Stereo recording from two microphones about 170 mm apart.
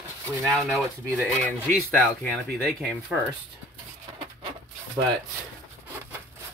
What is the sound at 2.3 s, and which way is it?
Speech, centre (ahead or behind).